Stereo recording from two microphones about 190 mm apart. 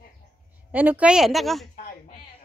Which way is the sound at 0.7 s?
10° right (ahead or behind).